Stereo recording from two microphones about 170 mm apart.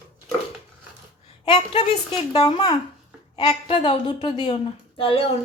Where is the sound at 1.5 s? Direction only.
30° left (ahead or behind).